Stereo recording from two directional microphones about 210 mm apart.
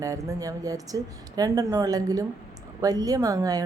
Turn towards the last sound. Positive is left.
turn(degrees=-15)  # may be behind; listen again after turning